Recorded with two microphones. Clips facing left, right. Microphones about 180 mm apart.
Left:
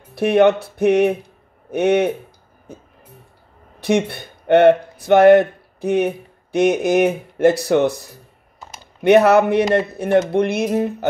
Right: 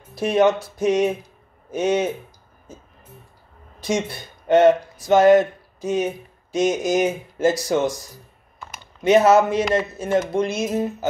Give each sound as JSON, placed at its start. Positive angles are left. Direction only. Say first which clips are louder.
{"t": 0.1, "sound": "speech", "louder": "left 4 dB", "side_deg": 60}